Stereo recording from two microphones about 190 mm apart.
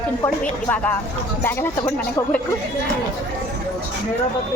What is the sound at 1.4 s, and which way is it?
Speech, 10° left (ahead or behind).